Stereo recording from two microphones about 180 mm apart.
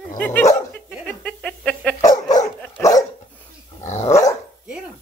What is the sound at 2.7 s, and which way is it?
Dog, 15° left (ahead or behind).